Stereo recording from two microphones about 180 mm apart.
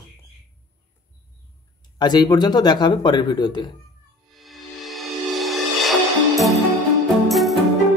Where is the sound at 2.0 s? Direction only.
25° left (ahead or behind).